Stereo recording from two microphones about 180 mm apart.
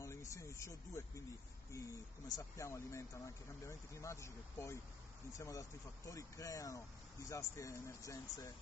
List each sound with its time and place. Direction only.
0.0 s speech: 15° left (ahead or behind)